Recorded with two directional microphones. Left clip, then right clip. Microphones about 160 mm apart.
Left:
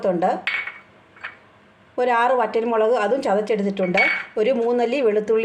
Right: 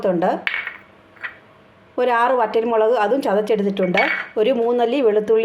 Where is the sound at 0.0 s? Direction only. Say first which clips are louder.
Right 1 dB; 15° right (ahead or behind).